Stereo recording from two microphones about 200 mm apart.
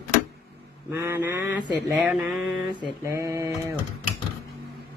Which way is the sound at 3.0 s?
15° right (ahead or behind).